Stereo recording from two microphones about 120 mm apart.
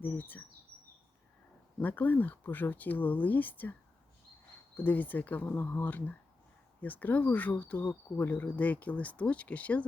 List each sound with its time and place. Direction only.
0.0 s speech: 15° left (ahead or behind)
1.8 s speech: 15° left (ahead or behind)
4.8 s speech: 15° left (ahead or behind)